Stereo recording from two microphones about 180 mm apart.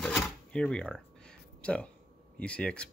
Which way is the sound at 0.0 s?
5° left (ahead or behind).